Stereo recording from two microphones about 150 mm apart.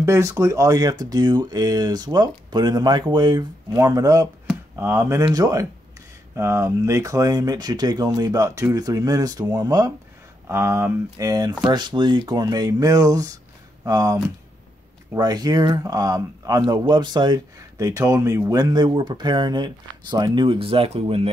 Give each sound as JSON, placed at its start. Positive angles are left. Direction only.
{"t": 0.0, "sound": "speech", "side_deg": -20}